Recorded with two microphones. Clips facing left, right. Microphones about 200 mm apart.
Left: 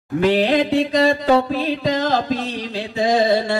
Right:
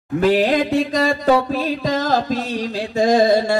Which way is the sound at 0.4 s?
45° right (ahead or behind).